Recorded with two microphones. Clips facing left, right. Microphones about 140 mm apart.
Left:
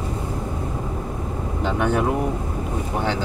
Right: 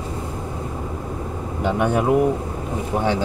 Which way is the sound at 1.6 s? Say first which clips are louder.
Right 2 dB; 15° right (ahead or behind).